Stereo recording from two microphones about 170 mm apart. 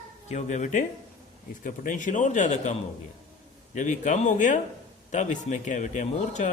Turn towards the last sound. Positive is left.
turn(degrees=45)  # may be behind; listen again after turning